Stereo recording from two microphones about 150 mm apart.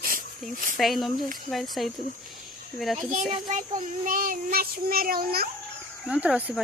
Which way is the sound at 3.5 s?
60° right (ahead or behind).